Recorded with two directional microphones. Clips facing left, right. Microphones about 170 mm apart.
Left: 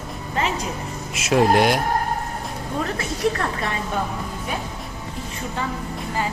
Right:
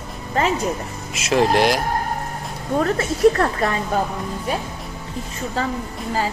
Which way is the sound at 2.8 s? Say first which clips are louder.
Right 8 dB; 45° right (ahead or behind).